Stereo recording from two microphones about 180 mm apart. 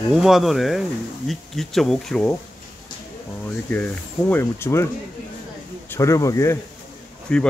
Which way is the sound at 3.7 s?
10° left (ahead or behind).